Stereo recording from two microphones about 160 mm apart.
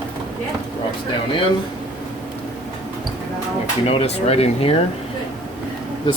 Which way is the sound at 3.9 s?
40° left (ahead or behind).